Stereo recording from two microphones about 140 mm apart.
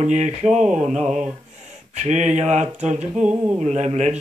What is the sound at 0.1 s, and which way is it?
Mantra, 55° right (ahead or behind).